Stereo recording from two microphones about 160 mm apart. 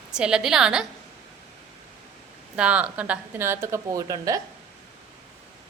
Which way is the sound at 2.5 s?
5° right (ahead or behind).